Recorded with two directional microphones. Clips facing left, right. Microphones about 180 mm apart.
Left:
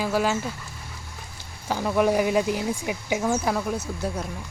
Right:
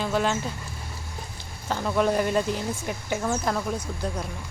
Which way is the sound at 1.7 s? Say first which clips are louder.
Left 2 dB; 10° left (ahead or behind).